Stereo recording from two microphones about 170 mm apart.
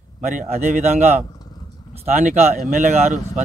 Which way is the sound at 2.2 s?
45° right (ahead or behind).